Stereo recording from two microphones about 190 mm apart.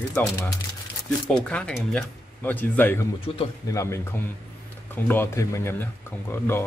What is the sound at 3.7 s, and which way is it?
Speech, 15° left (ahead or behind).